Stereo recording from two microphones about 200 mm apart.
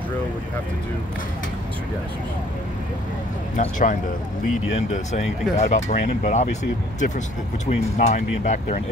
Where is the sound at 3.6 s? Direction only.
40° left (ahead or behind).